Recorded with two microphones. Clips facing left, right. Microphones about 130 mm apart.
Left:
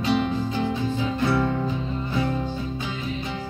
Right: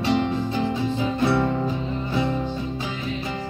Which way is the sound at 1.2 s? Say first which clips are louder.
Right 2 dB; 25° right (ahead or behind).